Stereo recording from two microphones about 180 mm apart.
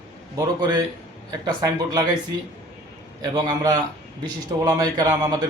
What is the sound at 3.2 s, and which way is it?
Speech, 20° right (ahead or behind).